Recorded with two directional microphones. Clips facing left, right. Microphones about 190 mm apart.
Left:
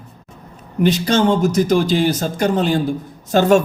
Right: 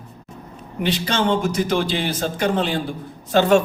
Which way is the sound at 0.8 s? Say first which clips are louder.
Left 6 dB; 45° left (ahead or behind).